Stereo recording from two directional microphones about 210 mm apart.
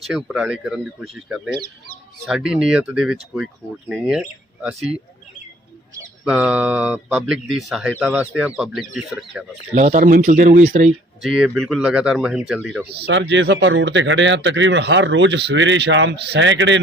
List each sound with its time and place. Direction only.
0.0 s speech: centre (ahead or behind)
9.7 s speech: 35° right (ahead or behind)
11.2 s speech: centre (ahead or behind)
12.9 s speech: 50° right (ahead or behind)